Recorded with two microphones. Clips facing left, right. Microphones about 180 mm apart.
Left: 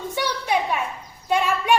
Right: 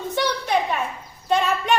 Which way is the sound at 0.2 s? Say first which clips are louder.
Right 1 dB; 10° left (ahead or behind).